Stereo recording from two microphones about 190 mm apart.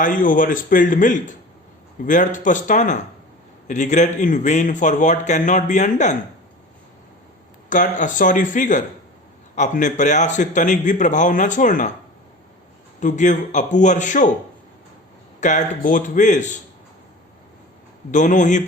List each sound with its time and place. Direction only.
0.0 s a man's voice: 45° left (ahead or behind)
7.7 s a man's voice: 40° left (ahead or behind)
13.0 s a man's voice: 40° left (ahead or behind)
15.4 s a man's voice: 40° left (ahead or behind)
18.1 s a man's voice: 40° left (ahead or behind)